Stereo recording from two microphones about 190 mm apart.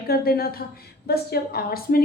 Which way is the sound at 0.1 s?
55° left (ahead or behind).